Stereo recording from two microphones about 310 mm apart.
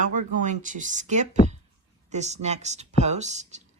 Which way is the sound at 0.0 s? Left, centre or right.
Right.